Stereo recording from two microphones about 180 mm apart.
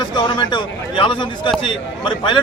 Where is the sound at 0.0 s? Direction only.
25° left (ahead or behind).